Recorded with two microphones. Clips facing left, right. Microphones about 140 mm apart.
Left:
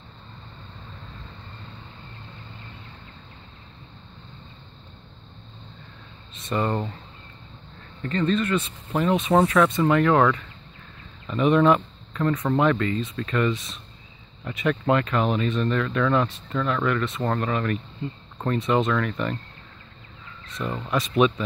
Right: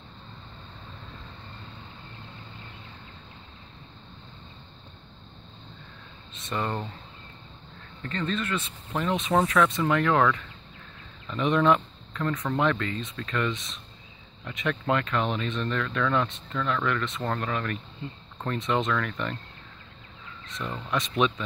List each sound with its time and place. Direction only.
6.3 s speech: centre (ahead or behind)
6.6 s speech: 25° left (ahead or behind)
8.1 s speech: centre (ahead or behind)
8.9 s speech: 10° left (ahead or behind)
11.3 s speech: 5° left (ahead or behind)
20.6 s speech: 20° left (ahead or behind)
20.9 s speech: 5° left (ahead or behind)